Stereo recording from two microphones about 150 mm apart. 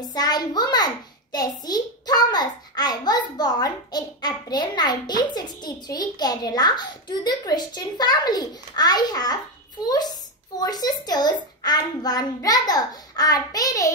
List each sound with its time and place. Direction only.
0.0 s a child's voice: 25° left (ahead or behind)